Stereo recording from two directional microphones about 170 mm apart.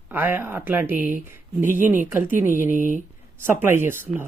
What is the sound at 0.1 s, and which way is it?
Speech, 10° right (ahead or behind).